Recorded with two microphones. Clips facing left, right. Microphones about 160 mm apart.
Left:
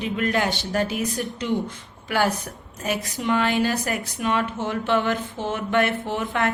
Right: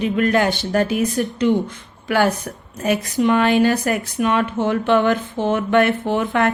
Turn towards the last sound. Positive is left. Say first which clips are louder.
# right 6 dB
turn(degrees=-60)  # may be behind; listen again after turning